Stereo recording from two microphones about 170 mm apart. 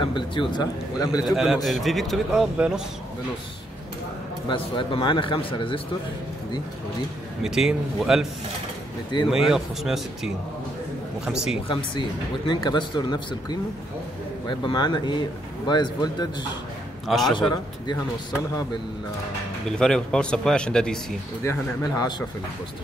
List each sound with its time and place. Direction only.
0.0 s speech: 30° left (ahead or behind)
1.3 s speech: centre (ahead or behind)
4.5 s speech: 30° left (ahead or behind)
7.4 s speech: 5° right (ahead or behind)
9.3 s speech: centre (ahead or behind)
11.6 s speech: 30° left (ahead or behind)
17.1 s speech: centre (ahead or behind)
19.7 s speech: 5° left (ahead or behind)
21.5 s speech: 20° left (ahead or behind)